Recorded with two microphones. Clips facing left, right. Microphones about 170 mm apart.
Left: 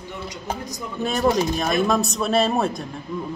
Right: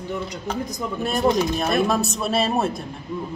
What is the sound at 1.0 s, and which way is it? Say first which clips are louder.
A man's voice: even; 5° right (ahead or behind).